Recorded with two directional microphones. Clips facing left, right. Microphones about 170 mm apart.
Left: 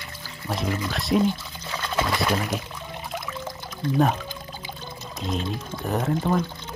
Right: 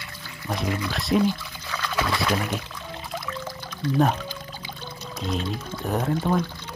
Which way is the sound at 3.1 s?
20° left (ahead or behind).